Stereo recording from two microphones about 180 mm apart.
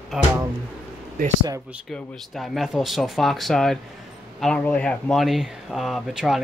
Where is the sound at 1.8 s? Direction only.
Centre (ahead or behind).